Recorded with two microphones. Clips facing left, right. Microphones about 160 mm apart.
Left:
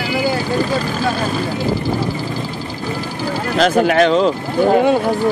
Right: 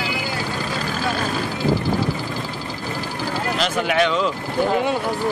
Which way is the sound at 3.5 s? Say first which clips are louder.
Left 8 dB; 40° left (ahead or behind).